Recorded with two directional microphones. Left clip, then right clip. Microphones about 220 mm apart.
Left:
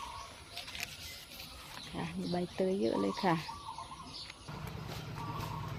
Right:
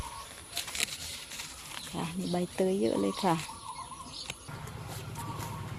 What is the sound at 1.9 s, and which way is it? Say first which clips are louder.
Speech: right 3 dB; 20° right (ahead or behind).